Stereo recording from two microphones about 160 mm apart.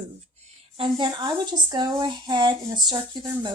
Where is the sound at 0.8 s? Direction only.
30° right (ahead or behind).